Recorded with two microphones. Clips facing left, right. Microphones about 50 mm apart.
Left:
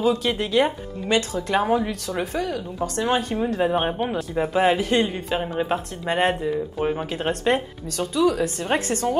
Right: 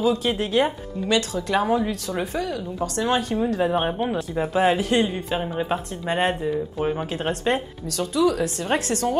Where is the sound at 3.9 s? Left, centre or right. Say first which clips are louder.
Even; centre.